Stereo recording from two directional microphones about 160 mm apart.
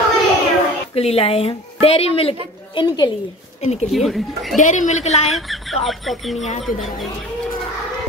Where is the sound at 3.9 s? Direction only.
Centre (ahead or behind).